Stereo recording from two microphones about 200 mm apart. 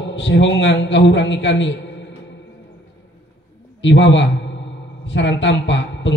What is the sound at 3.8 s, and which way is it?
A man's voice, 65° left (ahead or behind).